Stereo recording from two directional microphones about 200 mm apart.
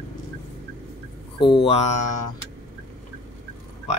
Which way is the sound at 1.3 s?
25° left (ahead or behind).